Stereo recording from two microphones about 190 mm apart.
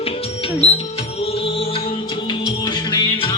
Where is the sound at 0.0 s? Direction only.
30° left (ahead or behind).